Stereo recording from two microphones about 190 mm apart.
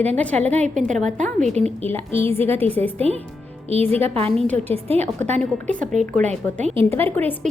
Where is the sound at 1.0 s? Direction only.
40° right (ahead or behind).